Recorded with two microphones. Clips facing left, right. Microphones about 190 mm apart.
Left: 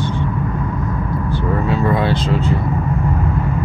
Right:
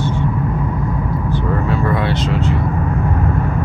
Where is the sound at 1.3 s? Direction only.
15° left (ahead or behind).